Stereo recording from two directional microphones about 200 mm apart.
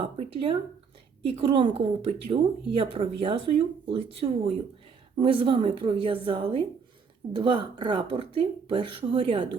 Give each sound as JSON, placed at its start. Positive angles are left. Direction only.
{"t": 0.0, "sound": "speech", "side_deg": -30}